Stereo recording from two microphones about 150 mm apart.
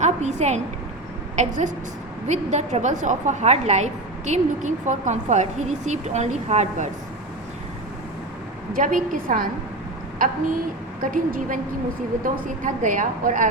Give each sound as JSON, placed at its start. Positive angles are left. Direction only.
{"t": 0.0, "sound": "a woman's voice", "side_deg": -50}
{"t": 8.7, "sound": "speech", "side_deg": -60}